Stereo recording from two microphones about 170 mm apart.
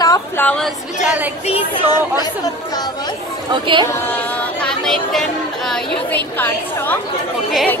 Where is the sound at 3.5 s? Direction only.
30° right (ahead or behind).